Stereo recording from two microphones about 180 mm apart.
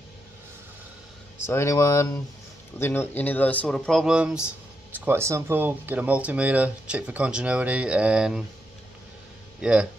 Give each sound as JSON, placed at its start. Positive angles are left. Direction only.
{"t": 1.4, "sound": "speech", "side_deg": 15}
{"t": 9.6, "sound": "speech", "side_deg": -5}